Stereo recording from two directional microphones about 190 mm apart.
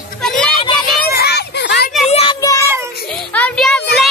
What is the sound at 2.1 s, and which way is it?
Child singing, 30° left (ahead or behind).